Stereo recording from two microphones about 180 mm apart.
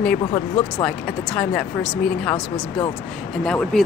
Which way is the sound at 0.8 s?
5° left (ahead or behind).